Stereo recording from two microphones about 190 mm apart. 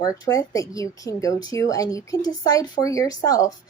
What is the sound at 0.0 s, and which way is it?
Speech, 20° left (ahead or behind).